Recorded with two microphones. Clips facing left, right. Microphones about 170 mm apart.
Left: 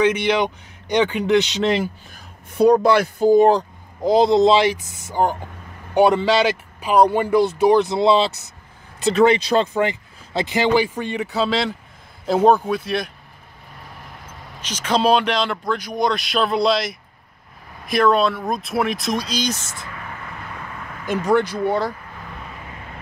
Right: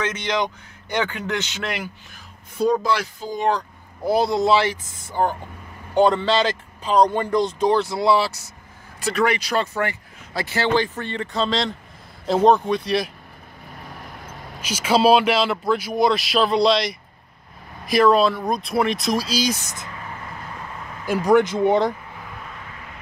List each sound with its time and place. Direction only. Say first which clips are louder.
0.0 s speech: left 6 dB; 15° left (ahead or behind)
2.5 s speech: left 6 dB; 65° left (ahead or behind)
4.0 s a man's voice: left 5 dB; 20° left (ahead or behind); by 13.1 s centre (ahead or behind)
14.6 s a man's voice: right 2 dB; 10° right (ahead or behind)
21.0 s speech: right 2 dB; 10° right (ahead or behind)